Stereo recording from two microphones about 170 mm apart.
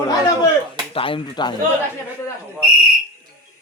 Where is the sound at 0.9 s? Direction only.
30° left (ahead or behind).